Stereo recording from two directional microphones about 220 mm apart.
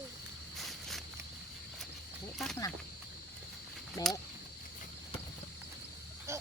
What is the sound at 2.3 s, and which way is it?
Speech, centre (ahead or behind).